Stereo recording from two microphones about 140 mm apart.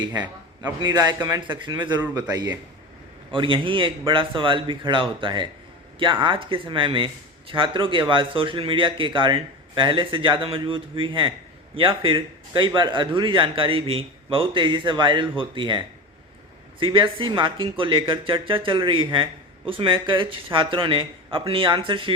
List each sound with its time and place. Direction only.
0.1 s a man's voice: 15° right (ahead or behind)
1.4 s a man's voice: 35° right (ahead or behind)
16.8 s speech: 35° right (ahead or behind)